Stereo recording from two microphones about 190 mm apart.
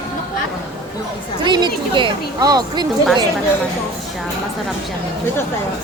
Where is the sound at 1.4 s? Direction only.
25° right (ahead or behind).